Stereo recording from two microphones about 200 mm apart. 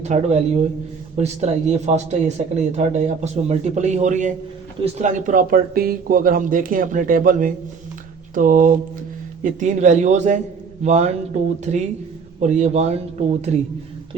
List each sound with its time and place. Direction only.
0.0 s a man's voice: 35° right (ahead or behind)